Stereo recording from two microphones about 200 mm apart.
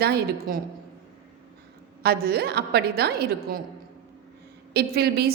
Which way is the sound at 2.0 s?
50° right (ahead or behind).